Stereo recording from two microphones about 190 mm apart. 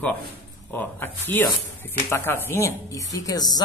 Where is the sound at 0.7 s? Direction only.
10° left (ahead or behind).